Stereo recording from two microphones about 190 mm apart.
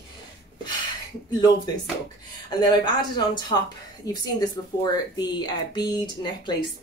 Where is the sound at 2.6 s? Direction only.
25° left (ahead or behind).